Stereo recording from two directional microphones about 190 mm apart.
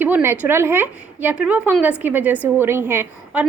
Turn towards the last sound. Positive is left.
turn(degrees=-10)  # may be behind; listen again after turning